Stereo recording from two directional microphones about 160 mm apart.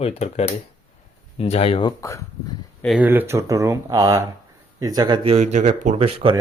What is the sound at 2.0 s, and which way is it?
Speech, 20° left (ahead or behind).